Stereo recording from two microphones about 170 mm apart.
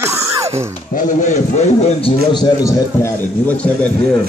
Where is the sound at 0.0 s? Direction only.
15° right (ahead or behind).